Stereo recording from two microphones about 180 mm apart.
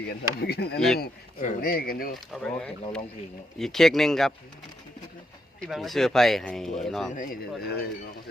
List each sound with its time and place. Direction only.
0.0 s speech: 60° left (ahead or behind)
0.9 s speech: 50° left (ahead or behind)
2.3 s speech: 5° left (ahead or behind)
5.5 s speech: centre (ahead or behind)
7.1 s speech: 45° left (ahead or behind)
7.6 s speech: 60° left (ahead or behind)